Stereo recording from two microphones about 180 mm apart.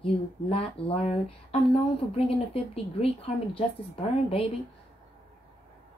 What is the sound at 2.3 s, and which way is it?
Speech, 35° left (ahead or behind).